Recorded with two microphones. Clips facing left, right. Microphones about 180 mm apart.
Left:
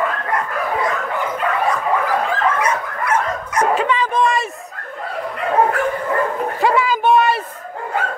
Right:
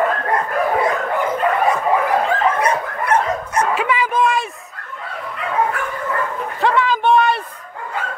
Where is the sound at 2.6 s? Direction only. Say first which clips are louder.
Right 1 dB; 35° right (ahead or behind).